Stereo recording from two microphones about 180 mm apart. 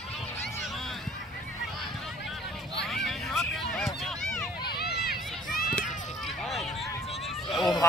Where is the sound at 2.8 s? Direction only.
Centre (ahead or behind).